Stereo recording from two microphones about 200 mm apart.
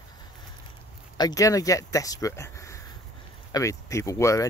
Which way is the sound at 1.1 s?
20° left (ahead or behind).